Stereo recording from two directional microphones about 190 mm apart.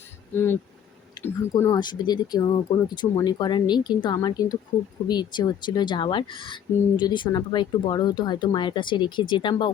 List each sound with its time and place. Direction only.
0.3 s speech: 10° left (ahead or behind)
1.2 s a sound: 25° left (ahead or behind)
1.6 s speech: 20° left (ahead or behind)